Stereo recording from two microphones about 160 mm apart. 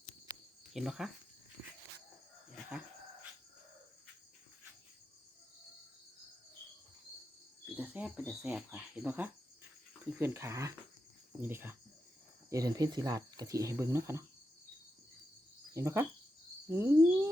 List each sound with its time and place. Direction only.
0.7 s speech: 5° right (ahead or behind)
7.8 s speech: 10° right (ahead or behind)
15.7 s speech: 15° right (ahead or behind)